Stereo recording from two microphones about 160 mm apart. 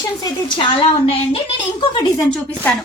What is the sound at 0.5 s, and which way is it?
Speech, 35° left (ahead or behind).